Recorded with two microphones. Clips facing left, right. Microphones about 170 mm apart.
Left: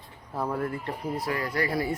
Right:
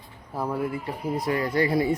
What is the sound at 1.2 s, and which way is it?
Speech, 25° right (ahead or behind).